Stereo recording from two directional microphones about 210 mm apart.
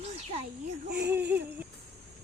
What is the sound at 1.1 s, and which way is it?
Speech, 10° right (ahead or behind).